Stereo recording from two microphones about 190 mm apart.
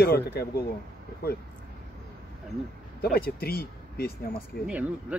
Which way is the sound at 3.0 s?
55° left (ahead or behind).